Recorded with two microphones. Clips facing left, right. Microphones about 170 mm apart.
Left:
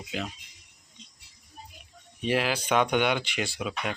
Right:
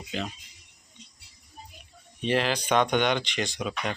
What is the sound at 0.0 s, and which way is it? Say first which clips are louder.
Speech: right 1 dB; 5° left (ahead or behind).